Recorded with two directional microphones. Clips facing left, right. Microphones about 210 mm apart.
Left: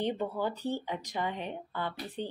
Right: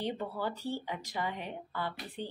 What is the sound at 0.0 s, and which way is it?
Speech, 20° left (ahead or behind).